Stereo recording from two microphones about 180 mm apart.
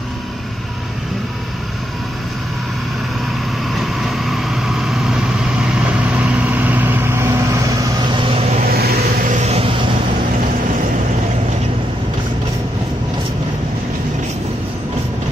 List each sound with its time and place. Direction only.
3.7 s vehicle: centre (ahead or behind); by 8.5 s 30° right (ahead or behind)
8.5 s vehicle: 60° right (ahead or behind)
9.4 s vehicle: 35° right (ahead or behind)